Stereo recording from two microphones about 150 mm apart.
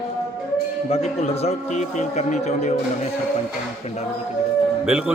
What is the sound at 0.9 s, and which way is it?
Speech, 40° left (ahead or behind).